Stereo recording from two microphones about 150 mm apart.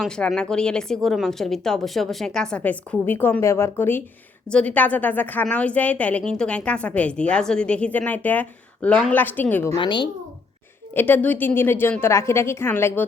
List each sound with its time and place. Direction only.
0.0 s a woman's voice: 5° left (ahead or behind)
9.7 s a woman's voice: 30° left (ahead or behind)
10.9 s a woman's voice: 10° left (ahead or behind)